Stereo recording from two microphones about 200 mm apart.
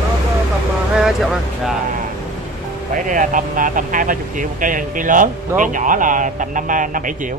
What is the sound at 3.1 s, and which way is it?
Speech, 40° right (ahead or behind).